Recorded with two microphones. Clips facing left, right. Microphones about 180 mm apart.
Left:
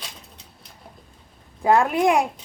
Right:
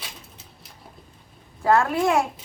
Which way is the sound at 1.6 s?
15° left (ahead or behind).